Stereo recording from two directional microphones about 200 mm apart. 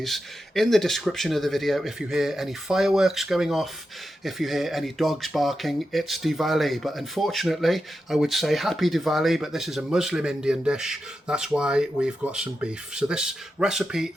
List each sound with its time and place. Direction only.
0.0 s speech: centre (ahead or behind)